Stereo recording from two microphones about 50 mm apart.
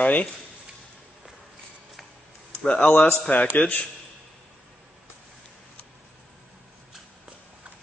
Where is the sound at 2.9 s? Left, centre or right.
Left.